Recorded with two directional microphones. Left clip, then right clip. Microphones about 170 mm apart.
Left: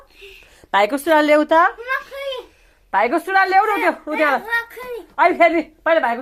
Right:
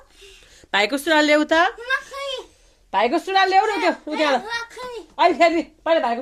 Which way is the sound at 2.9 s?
20° right (ahead or behind).